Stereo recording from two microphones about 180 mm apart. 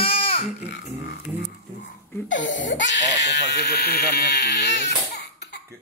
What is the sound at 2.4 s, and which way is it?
Speech, 90° left.